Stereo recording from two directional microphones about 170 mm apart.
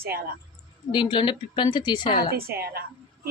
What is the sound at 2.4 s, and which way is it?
Speech, 65° right (ahead or behind).